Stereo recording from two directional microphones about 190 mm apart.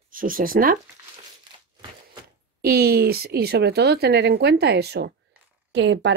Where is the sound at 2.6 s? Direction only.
55° right (ahead or behind).